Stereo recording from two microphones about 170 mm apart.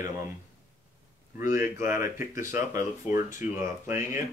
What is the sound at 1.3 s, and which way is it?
Speech, 15° right (ahead or behind).